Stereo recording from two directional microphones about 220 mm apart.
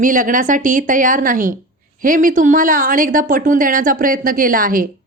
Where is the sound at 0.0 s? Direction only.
35° right (ahead or behind).